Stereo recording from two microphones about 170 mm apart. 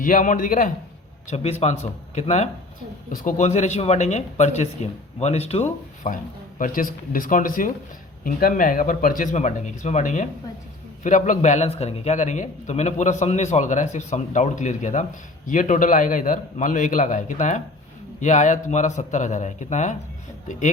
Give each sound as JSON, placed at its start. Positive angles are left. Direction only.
{"t": 0.0, "sound": "a man's voice", "side_deg": 50}
{"t": 1.3, "sound": "speech", "side_deg": 40}
{"t": 6.6, "sound": "a man's voice", "side_deg": 55}